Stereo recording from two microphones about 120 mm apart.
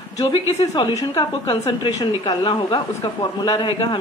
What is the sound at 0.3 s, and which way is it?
Speech, 60° left (ahead or behind).